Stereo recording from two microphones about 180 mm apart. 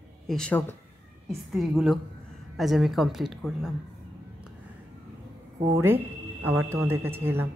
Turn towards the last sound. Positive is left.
turn(degrees=-15)  # may be behind; listen again after turning